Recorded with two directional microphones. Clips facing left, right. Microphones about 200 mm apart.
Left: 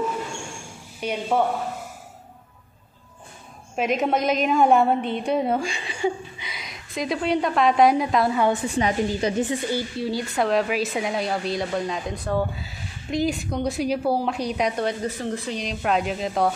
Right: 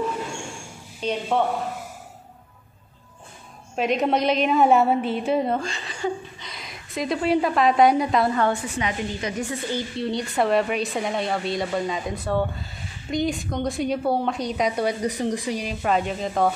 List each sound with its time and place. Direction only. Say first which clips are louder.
1.0 s speech: right 1 dB; 10° left (ahead or behind)
3.7 s a woman's voice: right 1 dB; centre (ahead or behind)
6.5 s a woman's voice: right 1 dB; centre (ahead or behind)
8.6 s a woman's voice: left 5 dB; 35° left (ahead or behind)
9.4 s a woman's voice: left 3 dB; 15° left (ahead or behind)
14.8 s speech: right 2 dB; 10° right (ahead or behind)